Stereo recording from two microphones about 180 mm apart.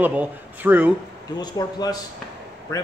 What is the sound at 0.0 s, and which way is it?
Speech, 10° right (ahead or behind).